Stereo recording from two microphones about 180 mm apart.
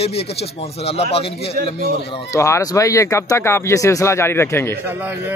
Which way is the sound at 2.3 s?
15° left (ahead or behind).